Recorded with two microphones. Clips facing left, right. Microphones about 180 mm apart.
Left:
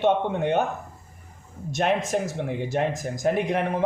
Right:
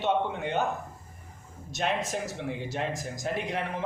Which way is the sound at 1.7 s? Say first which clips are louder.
Left 6 dB; 55° left (ahead or behind).